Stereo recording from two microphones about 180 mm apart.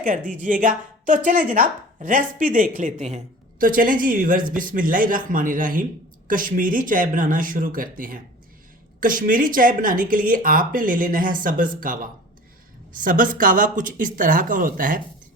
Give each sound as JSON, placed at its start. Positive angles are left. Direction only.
{"t": 0.4, "sound": "a woman's voice", "side_deg": -45}
{"t": 13.0, "sound": "a woman's voice", "side_deg": -50}